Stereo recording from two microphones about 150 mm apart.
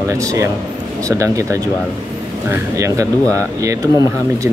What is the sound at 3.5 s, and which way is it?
Speech, 20° right (ahead or behind).